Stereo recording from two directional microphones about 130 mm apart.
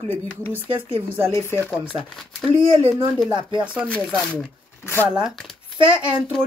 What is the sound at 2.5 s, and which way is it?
Speech, 40° right (ahead or behind).